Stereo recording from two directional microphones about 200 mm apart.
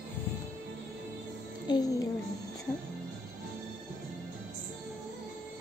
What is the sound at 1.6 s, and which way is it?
Music, 20° left (ahead or behind).